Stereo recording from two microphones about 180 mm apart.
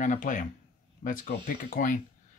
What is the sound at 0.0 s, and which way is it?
Speech, 45° left (ahead or behind).